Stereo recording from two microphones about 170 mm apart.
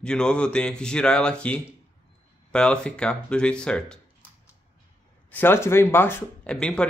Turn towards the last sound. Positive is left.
turn(degrees=5)  # may be behind; listen again after turning